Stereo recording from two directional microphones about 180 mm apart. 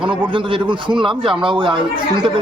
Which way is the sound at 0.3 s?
25° right (ahead or behind).